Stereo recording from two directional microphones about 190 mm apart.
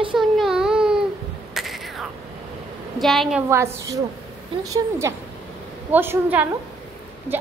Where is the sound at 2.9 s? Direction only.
Centre (ahead or behind).